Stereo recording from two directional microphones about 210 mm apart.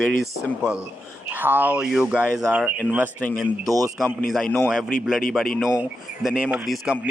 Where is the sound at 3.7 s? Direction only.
15° right (ahead or behind).